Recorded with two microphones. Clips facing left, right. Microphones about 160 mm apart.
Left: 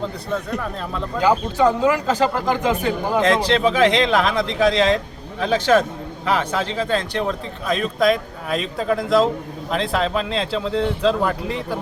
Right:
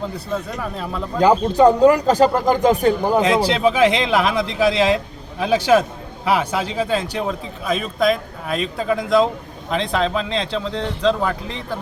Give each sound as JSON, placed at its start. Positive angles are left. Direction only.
{"t": 0.6, "sound": "a man's voice", "side_deg": -5}
{"t": 1.2, "sound": "speech", "side_deg": -40}
{"t": 3.2, "sound": "a man's voice", "side_deg": -5}